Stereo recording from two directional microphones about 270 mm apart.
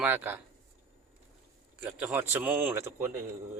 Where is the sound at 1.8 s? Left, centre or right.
Centre.